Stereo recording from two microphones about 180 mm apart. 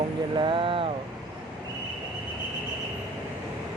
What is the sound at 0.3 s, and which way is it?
Vehicle, 30° right (ahead or behind).